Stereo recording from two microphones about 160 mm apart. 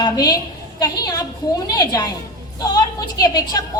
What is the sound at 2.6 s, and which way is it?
Speech, 25° left (ahead or behind).